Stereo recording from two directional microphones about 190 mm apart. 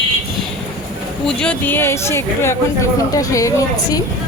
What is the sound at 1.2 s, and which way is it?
Speech, 5° left (ahead or behind).